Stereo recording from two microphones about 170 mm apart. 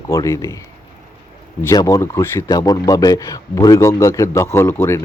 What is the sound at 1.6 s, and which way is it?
A man's voice, 20° left (ahead or behind).